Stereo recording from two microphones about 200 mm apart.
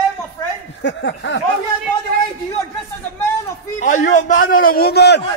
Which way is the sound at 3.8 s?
40° left (ahead or behind).